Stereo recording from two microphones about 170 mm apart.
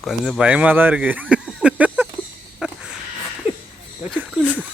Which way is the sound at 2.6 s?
5° right (ahead or behind).